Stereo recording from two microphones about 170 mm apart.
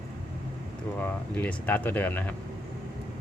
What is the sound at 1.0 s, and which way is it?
Speech, 10° left (ahead or behind).